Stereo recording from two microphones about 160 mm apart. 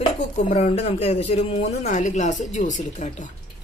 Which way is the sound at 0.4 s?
45° left (ahead or behind).